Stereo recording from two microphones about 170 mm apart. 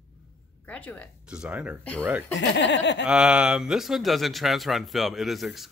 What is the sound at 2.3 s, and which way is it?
Speech, 90° left.